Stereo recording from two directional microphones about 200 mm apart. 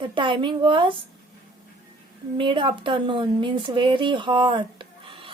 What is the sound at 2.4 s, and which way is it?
Speech, 25° right (ahead or behind).